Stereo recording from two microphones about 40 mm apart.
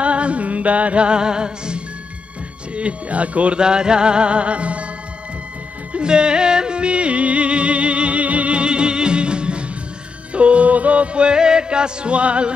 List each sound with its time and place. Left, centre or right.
0.0 s music: right
2.7 s speech: right
3.5 s music: right
5.9 s music: right